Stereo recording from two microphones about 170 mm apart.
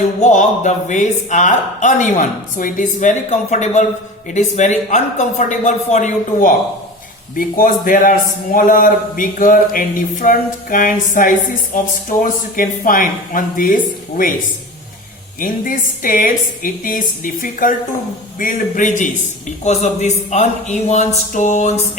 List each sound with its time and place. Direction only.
0.2 s speech: 45° left (ahead or behind)
15.4 s speech: 50° left (ahead or behind)